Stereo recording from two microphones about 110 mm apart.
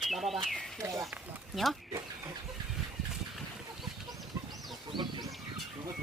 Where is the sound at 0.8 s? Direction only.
30° right (ahead or behind).